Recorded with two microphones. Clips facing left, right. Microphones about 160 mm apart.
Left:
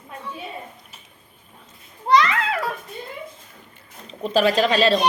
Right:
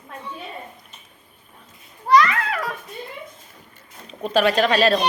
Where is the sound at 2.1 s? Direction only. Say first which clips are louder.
Right 1 dB; 20° left (ahead or behind).